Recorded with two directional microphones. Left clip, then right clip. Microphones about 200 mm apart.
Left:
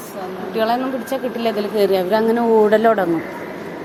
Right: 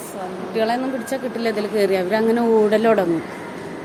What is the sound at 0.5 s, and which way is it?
A woman's voice, 5° right (ahead or behind).